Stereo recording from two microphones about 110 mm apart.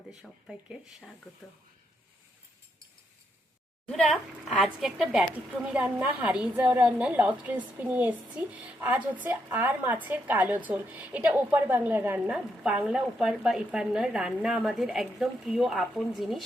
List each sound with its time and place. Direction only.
0.1 s a woman's voice: 5° right (ahead or behind)
3.8 s a woman's voice: 5° left (ahead or behind)
5.3 s a woman's voice: 15° right (ahead or behind)